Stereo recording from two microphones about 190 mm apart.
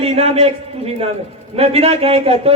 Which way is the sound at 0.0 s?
30° right (ahead or behind).